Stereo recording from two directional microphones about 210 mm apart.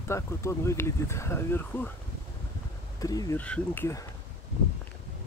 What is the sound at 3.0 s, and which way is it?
Speech, 15° left (ahead or behind).